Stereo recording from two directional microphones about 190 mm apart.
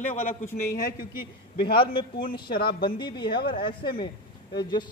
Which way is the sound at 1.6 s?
25° left (ahead or behind).